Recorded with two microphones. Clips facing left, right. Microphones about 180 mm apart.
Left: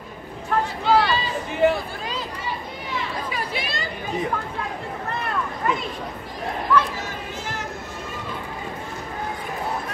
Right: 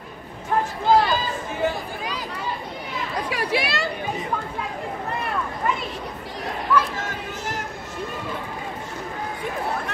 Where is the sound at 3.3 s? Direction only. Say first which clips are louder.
Right 4 dB; 75° right (ahead or behind).